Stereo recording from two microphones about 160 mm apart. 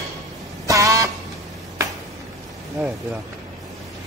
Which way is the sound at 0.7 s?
20° right (ahead or behind).